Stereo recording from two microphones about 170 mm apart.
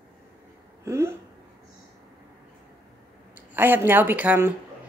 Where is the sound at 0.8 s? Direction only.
15° right (ahead or behind).